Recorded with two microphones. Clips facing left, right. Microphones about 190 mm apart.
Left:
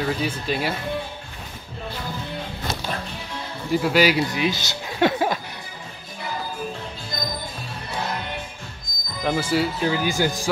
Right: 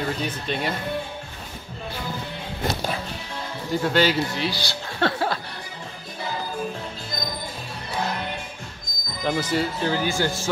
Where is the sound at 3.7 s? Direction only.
10° left (ahead or behind).